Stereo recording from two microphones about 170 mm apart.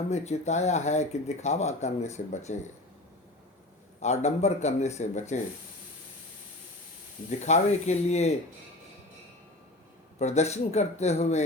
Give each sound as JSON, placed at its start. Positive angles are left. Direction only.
{"t": 0.1, "sound": "speech", "side_deg": 40}
{"t": 4.0, "sound": "speech", "side_deg": 40}
{"t": 7.3, "sound": "speech", "side_deg": 40}
{"t": 10.2, "sound": "speech", "side_deg": 40}